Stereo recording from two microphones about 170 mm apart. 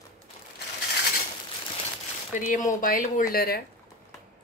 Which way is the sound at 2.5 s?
50° left (ahead or behind).